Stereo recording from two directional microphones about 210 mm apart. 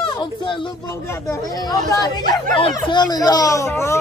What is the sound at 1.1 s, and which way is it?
Speech, 15° left (ahead or behind).